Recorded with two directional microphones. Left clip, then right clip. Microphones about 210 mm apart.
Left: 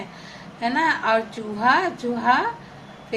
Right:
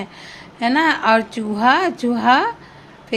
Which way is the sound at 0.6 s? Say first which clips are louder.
Right 5 dB; 45° right (ahead or behind).